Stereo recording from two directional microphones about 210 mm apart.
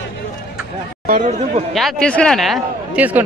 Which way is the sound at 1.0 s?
35° right (ahead or behind).